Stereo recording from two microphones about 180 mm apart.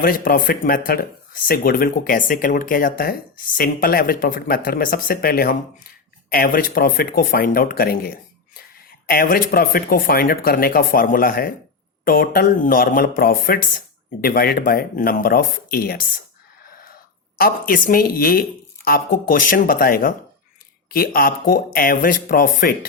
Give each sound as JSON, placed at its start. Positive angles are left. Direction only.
{"t": 0.0, "sound": "speech", "side_deg": 50}
{"t": 17.3, "sound": "speech", "side_deg": 50}